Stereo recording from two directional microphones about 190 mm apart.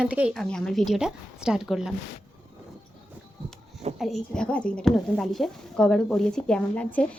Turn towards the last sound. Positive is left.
turn(degrees=5)  # may be behind; listen again after turning